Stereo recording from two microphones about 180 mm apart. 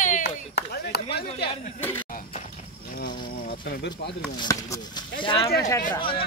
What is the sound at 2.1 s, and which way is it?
Horse, 45° left (ahead or behind).